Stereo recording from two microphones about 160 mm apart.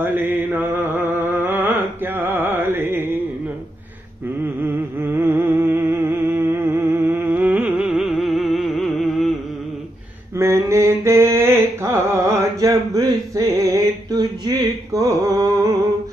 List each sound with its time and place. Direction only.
0.0 s mantra: 10° right (ahead or behind)
5.0 s a sound: 15° right (ahead or behind); by 9.3 s centre (ahead or behind)
10.3 s mantra: 20° right (ahead or behind)